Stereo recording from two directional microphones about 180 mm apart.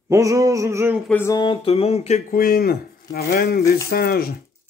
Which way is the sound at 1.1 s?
15° left (ahead or behind).